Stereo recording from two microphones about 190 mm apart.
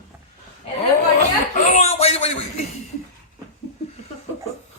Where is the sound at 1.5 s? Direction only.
35° left (ahead or behind).